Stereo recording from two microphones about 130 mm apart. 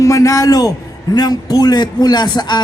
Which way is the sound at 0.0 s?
25° left (ahead or behind).